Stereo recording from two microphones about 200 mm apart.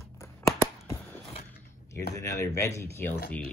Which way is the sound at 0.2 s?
15° left (ahead or behind).